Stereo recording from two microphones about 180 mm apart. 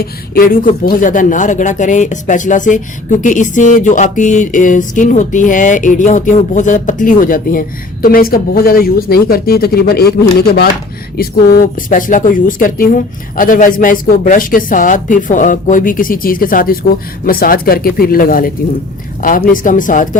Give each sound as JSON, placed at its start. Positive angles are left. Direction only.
{"t": 0.0, "sound": "speech", "side_deg": 55}